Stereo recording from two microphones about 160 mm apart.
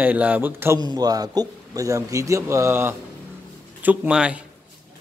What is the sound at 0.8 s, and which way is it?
A man's voice, 25° right (ahead or behind).